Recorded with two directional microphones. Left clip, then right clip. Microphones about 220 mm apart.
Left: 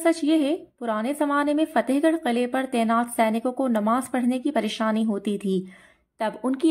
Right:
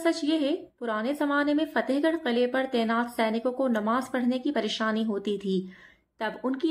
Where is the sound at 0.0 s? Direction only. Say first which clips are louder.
Left 5 dB; 35° left (ahead or behind).